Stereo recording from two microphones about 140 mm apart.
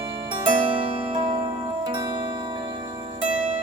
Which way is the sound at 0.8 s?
45° right (ahead or behind).